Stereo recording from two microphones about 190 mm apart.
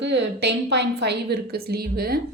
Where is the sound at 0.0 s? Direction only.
65° right (ahead or behind).